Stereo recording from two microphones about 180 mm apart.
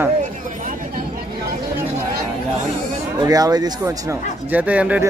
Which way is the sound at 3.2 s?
20° right (ahead or behind).